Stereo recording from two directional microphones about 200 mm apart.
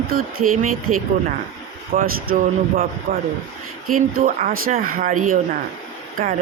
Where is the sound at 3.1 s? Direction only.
30° right (ahead or behind).